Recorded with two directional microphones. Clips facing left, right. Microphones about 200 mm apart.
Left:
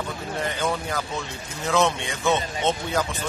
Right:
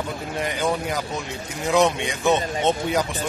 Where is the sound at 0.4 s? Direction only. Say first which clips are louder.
Right 3 dB; 15° right (ahead or behind).